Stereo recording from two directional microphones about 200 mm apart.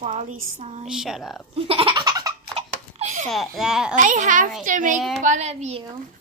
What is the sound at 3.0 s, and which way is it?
Baby laughter, 35° right (ahead or behind).